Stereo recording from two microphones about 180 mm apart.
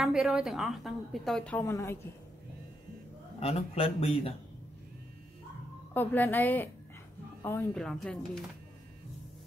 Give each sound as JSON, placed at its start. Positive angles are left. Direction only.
{"t": 0.0, "sound": "a woman's voice", "side_deg": -5}
{"t": 3.3, "sound": "a man's voice", "side_deg": 35}
{"t": 5.9, "sound": "a woman's voice", "side_deg": 10}